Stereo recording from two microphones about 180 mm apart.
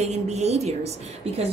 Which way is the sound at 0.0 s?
40° right (ahead or behind).